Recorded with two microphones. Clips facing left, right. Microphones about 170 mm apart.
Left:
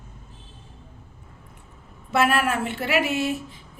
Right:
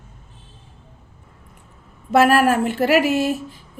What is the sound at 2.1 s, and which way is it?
Speech, 45° right (ahead or behind).